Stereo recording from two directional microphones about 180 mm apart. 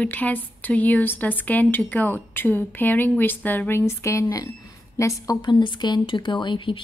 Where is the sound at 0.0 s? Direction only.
10° left (ahead or behind).